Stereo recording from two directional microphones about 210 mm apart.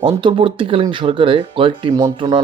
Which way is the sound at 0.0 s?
25° right (ahead or behind).